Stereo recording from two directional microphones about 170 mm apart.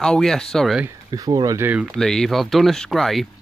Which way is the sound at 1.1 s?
20° right (ahead or behind).